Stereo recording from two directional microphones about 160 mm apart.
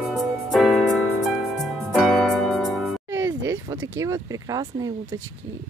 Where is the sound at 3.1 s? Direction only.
20° right (ahead or behind).